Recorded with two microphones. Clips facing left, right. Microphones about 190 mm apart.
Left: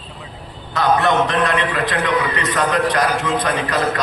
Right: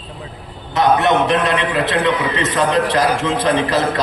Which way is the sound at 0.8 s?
20° right (ahead or behind).